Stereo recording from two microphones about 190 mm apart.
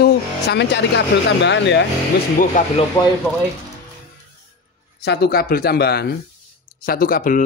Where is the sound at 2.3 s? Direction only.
40° left (ahead or behind).